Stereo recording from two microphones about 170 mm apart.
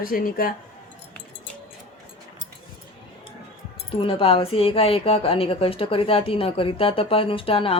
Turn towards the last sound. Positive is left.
turn(degrees=35)  # may be behind; listen again after turning